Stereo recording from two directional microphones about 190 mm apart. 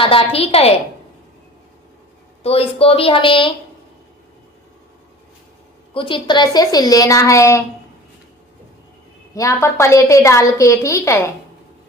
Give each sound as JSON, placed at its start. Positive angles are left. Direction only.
{"t": 0.0, "sound": "a woman's voice", "side_deg": 30}
{"t": 2.4, "sound": "a woman's voice", "side_deg": 30}
{"t": 5.9, "sound": "a woman's voice", "side_deg": 25}
{"t": 9.3, "sound": "a woman's voice", "side_deg": 15}